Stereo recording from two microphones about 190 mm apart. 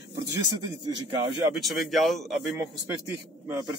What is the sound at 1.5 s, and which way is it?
Speech, centre (ahead or behind).